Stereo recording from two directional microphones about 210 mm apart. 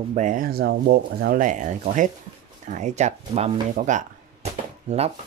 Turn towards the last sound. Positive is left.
turn(degrees=-30)  # may be behind; listen again after turning